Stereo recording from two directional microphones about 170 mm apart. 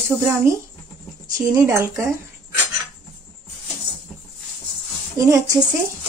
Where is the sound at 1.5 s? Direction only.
20° right (ahead or behind).